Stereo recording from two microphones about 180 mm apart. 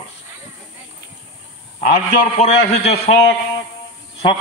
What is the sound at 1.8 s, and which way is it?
A man's voice, 45° left (ahead or behind).